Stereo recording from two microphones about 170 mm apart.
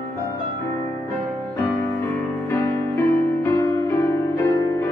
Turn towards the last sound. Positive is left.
turn(degrees=15)  # may be behind; listen again after turning